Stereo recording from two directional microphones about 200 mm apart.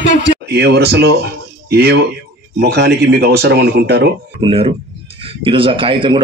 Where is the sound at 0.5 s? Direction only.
55° right (ahead or behind).